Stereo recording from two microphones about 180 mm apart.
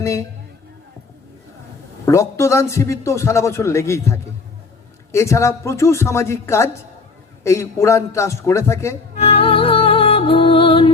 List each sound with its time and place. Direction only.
0.0 s a man's voice: 15° left (ahead or behind)
2.0 s a man's voice: 15° left (ahead or behind)
9.1 s music: 35° left (ahead or behind)